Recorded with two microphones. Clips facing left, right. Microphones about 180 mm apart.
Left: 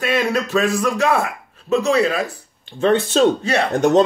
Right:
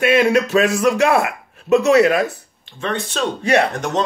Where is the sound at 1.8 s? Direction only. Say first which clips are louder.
Right 4 dB; 70° right (ahead or behind).